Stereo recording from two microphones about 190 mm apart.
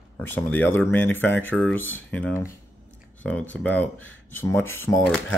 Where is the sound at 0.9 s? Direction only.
10° left (ahead or behind).